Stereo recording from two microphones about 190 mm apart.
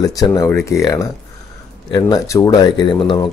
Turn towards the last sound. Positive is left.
turn(degrees=25)  # may be behind; listen again after turning